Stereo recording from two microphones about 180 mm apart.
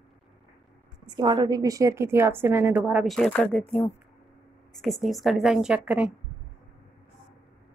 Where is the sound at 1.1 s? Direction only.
25° right (ahead or behind).